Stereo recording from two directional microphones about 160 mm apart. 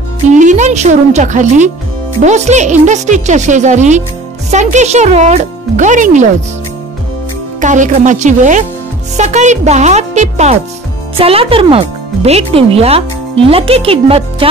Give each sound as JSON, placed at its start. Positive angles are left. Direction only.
{"t": 0.3, "sound": "speech", "side_deg": -50}
{"t": 7.6, "sound": "speech", "side_deg": -50}